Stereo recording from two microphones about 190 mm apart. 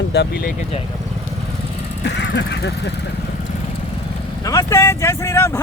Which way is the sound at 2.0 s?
65° left (ahead or behind).